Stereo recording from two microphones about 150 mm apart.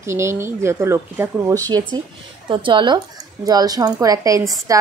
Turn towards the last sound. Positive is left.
turn(degrees=-20)  # may be behind; listen again after turning